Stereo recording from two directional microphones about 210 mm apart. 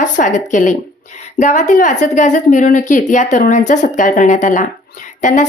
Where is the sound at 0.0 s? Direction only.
35° left (ahead or behind).